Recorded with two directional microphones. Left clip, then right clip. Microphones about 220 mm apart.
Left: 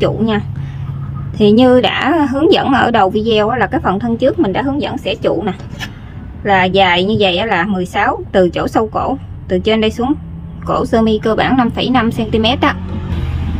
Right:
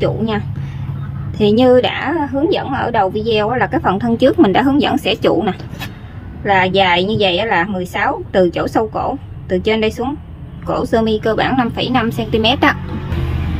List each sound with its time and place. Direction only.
1.4 s a woman's voice: 15° left (ahead or behind)
2.5 s a woman's voice: 35° left (ahead or behind)
3.5 s a woman's voice: 10° left (ahead or behind)
4.2 s a woman's voice: 20° right (ahead or behind)
6.4 s a woman's voice: 10° left (ahead or behind)